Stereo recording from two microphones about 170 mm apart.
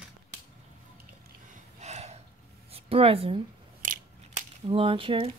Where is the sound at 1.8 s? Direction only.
40° right (ahead or behind).